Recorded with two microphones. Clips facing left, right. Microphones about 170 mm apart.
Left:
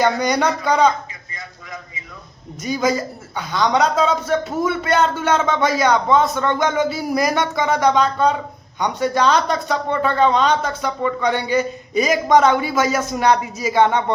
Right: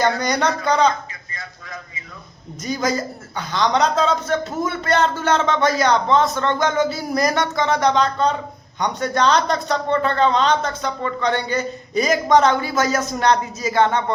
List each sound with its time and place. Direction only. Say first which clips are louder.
0.0 s speech: left 2 dB; 10° left (ahead or behind)
2.6 s a man's voice: left 2 dB; 5° left (ahead or behind)